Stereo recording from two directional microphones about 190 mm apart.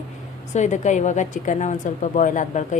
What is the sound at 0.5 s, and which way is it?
A woman's voice, 40° left (ahead or behind).